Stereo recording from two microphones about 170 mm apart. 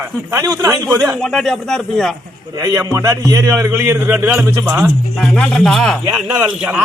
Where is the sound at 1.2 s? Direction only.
Centre (ahead or behind).